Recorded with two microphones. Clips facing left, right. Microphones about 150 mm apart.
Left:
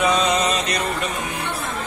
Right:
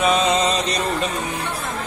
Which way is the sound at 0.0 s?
25° right (ahead or behind).